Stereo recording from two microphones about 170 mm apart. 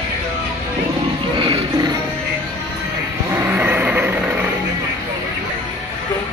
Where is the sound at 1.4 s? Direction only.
25° right (ahead or behind).